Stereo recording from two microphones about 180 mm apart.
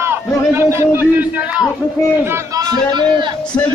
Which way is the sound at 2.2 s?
20° right (ahead or behind).